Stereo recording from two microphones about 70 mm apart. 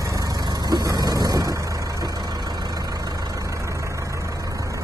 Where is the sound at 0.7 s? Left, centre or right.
Right.